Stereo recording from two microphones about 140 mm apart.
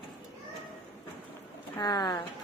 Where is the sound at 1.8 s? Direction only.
30° left (ahead or behind).